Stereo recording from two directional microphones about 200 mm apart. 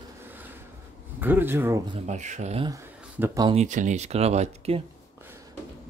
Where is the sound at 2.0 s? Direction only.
35° right (ahead or behind).